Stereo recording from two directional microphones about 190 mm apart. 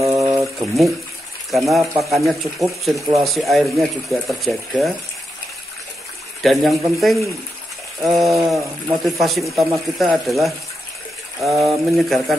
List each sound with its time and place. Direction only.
0.0 s a sound: 15° right (ahead or behind)
0.4 s water: centre (ahead or behind)
1.5 s speech: centre (ahead or behind)
6.4 s speech: centre (ahead or behind)